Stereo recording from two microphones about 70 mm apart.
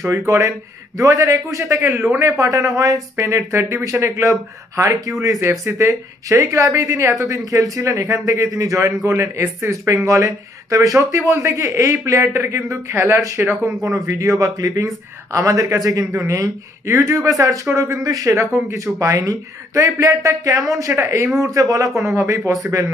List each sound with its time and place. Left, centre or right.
0.9 s a woman's voice: right
13.8 s a woman's voice: right
21.4 s a woman's voice: right